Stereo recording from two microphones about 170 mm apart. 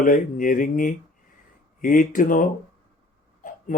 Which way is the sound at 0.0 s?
55° left (ahead or behind).